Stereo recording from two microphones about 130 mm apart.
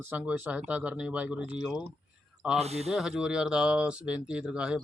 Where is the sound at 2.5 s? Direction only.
55° right (ahead or behind).